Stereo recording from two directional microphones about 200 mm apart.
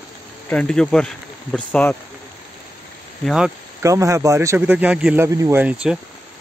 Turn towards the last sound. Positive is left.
turn(degrees=-15)  # may be behind; listen again after turning